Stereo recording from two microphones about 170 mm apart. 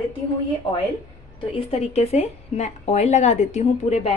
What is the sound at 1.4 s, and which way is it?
A woman's voice, 35° left (ahead or behind).